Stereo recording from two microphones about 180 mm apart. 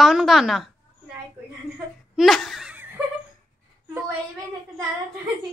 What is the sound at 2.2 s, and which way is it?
Laughter, centre (ahead or behind).